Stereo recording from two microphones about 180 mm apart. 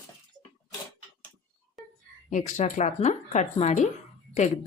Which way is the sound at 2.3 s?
40° left (ahead or behind).